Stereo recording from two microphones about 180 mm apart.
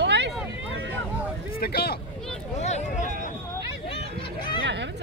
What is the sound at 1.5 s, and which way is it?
Speech, 60° left (ahead or behind).